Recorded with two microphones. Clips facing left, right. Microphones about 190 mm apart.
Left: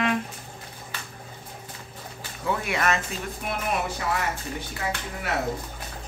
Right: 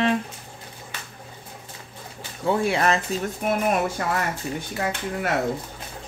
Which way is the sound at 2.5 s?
30° right (ahead or behind).